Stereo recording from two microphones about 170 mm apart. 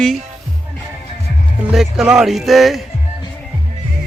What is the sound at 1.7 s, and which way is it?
Speech, 5° right (ahead or behind).